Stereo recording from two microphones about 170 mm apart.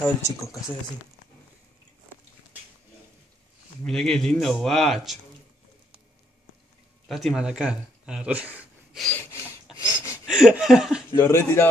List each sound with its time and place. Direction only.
0.0 s speech: 15° left (ahead or behind)
3.8 s speech: 5° left (ahead or behind)
7.1 s speech: centre (ahead or behind)
9.1 s a sound: 15° left (ahead or behind)
10.2 s a sound: 5° right (ahead or behind)
11.1 s speech: 15° left (ahead or behind)